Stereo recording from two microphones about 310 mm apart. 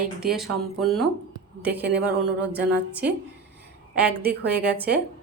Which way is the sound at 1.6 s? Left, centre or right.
Right.